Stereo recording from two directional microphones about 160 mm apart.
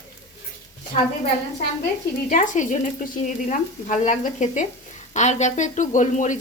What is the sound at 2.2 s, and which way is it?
A woman's voice, 55° left (ahead or behind).